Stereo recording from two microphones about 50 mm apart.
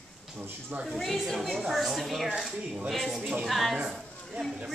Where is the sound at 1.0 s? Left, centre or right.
Centre.